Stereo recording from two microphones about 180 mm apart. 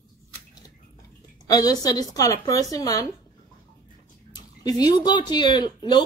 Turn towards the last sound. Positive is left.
turn(degrees=25)  # may be behind; listen again after turning